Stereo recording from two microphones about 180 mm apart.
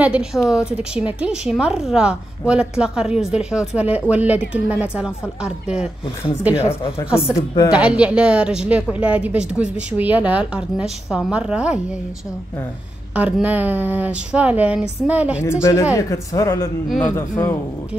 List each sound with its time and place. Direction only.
0.0 s a woman's voice: 5° right (ahead or behind)
7.3 s a woman's voice: 20° left (ahead or behind)
7.7 s a woman's voice: 5° right (ahead or behind)
13.1 s a woman's voice: 10° right (ahead or behind)
15.6 s speech: 15° left (ahead or behind)